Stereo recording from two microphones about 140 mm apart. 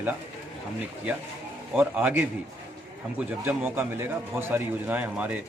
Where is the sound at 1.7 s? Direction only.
15° right (ahead or behind).